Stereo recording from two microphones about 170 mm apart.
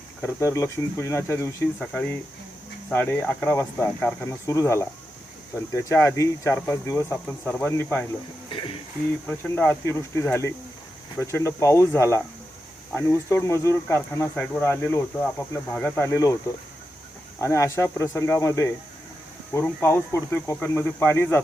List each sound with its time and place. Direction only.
0.2 s speech: 15° left (ahead or behind)
9.2 s speech: 15° left (ahead or behind)
17.4 s speech: 15° left (ahead or behind)